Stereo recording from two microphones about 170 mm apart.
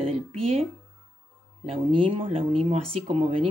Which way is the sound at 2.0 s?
30° right (ahead or behind).